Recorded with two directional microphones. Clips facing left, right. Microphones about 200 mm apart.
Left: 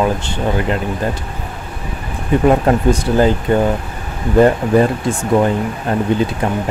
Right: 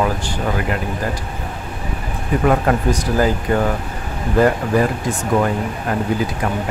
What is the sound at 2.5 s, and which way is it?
Speech, 25° left (ahead or behind).